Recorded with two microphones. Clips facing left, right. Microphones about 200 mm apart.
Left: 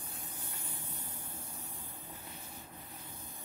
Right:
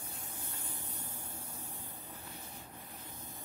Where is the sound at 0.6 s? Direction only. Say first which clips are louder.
Even; 15° right (ahead or behind).